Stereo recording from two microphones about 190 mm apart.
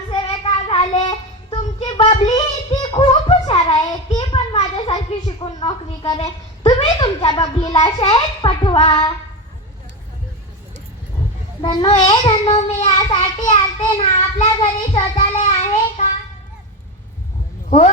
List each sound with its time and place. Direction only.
0.1 s child singing: 30° left (ahead or behind)
5.4 s a sound: 25° left (ahead or behind)
11.6 s a child's voice: 25° left (ahead or behind)
14.4 s child singing: 30° left (ahead or behind)
17.7 s speech: 35° left (ahead or behind)